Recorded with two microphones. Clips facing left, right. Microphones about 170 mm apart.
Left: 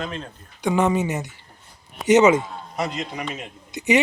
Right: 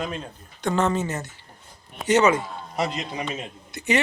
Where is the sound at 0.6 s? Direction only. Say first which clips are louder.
Left 3 dB; 10° left (ahead or behind).